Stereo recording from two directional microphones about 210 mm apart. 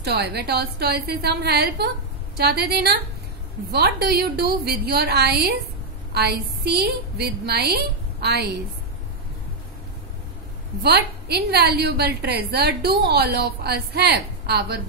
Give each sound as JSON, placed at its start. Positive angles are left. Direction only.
{"t": 0.0, "sound": "a woman's voice", "side_deg": -50}
{"t": 10.8, "sound": "a woman's voice", "side_deg": -50}